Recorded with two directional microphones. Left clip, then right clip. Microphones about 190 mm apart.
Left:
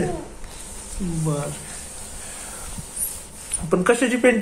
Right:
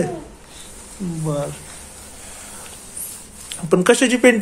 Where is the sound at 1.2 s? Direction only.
35° right (ahead or behind).